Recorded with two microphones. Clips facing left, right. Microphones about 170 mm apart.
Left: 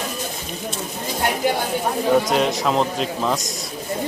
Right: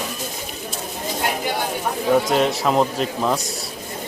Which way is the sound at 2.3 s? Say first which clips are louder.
Right 1 dB; centre (ahead or behind).